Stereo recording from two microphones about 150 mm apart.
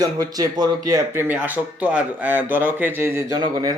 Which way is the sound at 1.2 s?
10° right (ahead or behind).